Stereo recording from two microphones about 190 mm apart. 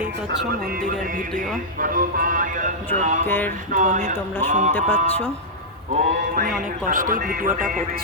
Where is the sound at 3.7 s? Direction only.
40° right (ahead or behind).